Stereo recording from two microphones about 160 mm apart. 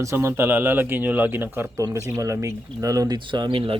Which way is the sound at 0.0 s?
15° right (ahead or behind).